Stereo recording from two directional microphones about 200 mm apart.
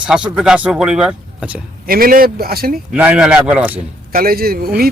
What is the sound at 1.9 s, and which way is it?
Speech, 45° right (ahead or behind).